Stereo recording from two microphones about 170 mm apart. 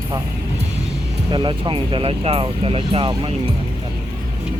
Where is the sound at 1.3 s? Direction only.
25° right (ahead or behind).